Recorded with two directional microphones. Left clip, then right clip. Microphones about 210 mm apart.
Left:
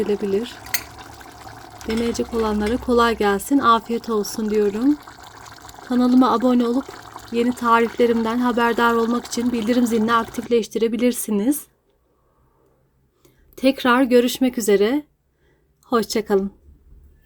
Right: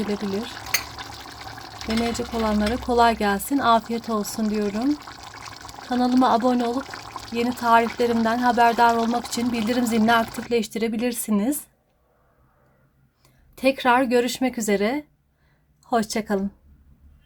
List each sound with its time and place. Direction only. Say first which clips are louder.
0.6 s water: right 2 dB; 5° right (ahead or behind)
1.8 s speech: left 3 dB; 15° left (ahead or behind)
4.9 s water: right 1 dB; 5° right (ahead or behind)
5.9 s speech: left 2 dB; 15° left (ahead or behind)
13.2 s a woman's voice: left 2 dB; 15° left (ahead or behind)